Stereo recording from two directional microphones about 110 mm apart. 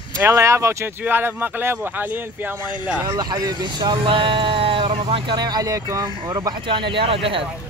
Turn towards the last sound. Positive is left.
turn(degrees=-55)  # may be behind; listen again after turning